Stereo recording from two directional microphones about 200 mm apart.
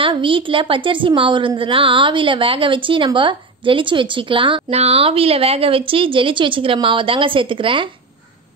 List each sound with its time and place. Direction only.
0.0 s a woman's voice: 25° right (ahead or behind)